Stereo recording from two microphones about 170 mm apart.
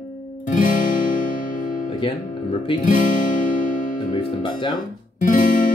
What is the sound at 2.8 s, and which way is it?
Guitar, 50° left (ahead or behind).